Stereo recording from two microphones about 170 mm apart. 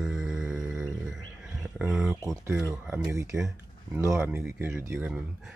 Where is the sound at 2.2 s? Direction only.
20° right (ahead or behind).